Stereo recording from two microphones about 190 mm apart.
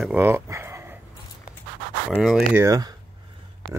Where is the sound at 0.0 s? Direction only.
10° right (ahead or behind).